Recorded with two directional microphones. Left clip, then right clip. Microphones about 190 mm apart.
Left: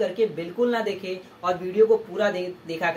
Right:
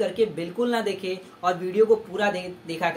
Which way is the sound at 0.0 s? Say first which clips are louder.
Even; 25° right (ahead or behind).